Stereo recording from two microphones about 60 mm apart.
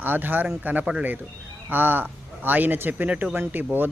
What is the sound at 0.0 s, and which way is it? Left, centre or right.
Speech, right.